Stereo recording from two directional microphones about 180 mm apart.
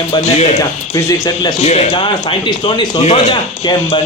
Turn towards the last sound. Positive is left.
turn(degrees=30)  # may be behind; listen again after turning